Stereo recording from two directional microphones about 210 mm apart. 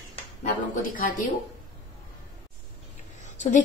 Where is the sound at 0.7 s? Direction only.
40° left (ahead or behind).